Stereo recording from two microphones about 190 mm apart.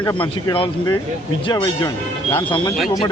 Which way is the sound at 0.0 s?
20° left (ahead or behind).